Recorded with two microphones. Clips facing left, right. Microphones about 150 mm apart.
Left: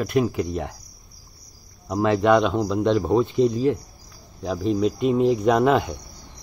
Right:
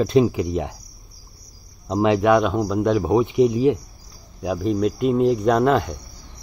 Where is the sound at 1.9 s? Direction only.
15° right (ahead or behind).